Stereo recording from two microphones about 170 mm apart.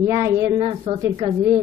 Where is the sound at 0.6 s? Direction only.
30° right (ahead or behind).